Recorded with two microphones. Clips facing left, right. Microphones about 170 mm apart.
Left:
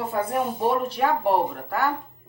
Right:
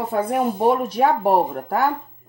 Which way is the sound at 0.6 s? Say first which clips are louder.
Right 5 dB; 45° right (ahead or behind).